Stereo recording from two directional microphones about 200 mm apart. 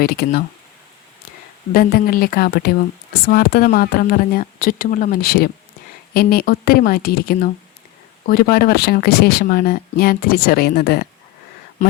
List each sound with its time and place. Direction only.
0.0 s speech: 50° left (ahead or behind)
1.7 s speech: 45° left (ahead or behind)